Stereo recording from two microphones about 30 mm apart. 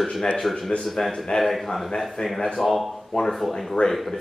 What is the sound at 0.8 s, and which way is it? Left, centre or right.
Speech, centre.